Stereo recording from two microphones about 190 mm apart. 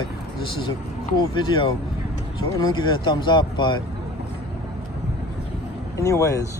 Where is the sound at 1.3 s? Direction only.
25° left (ahead or behind).